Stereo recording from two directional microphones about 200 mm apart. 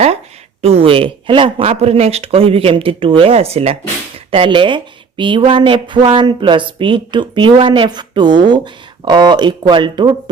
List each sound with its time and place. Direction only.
0.6 s speech: 30° right (ahead or behind)